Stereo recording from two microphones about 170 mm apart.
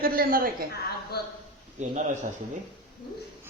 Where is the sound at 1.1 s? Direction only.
65° left (ahead or behind).